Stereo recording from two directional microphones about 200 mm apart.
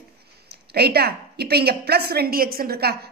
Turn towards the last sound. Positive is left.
turn(degrees=-50)  # may be behind; listen again after turning